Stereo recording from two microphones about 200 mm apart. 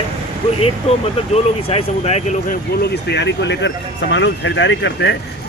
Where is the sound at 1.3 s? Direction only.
30° left (ahead or behind).